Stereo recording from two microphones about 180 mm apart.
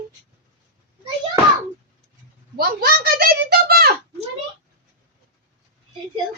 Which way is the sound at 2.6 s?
55° right (ahead or behind).